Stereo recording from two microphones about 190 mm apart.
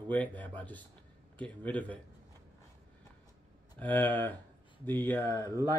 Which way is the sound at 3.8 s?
10° left (ahead or behind).